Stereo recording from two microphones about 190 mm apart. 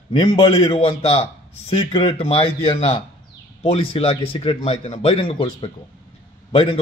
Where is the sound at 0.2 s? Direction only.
30° left (ahead or behind).